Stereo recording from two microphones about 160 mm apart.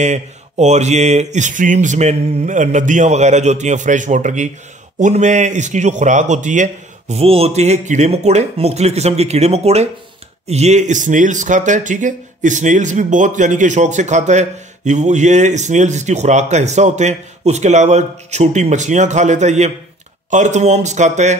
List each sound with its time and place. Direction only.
0.0 s speech: 45° right (ahead or behind)